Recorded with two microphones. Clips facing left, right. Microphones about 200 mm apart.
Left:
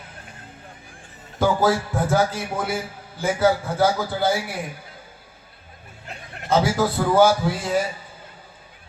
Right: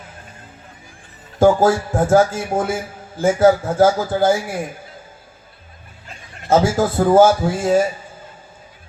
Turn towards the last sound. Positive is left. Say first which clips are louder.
# right 6 dB
turn(degrees=-45)  # may be behind; listen again after turning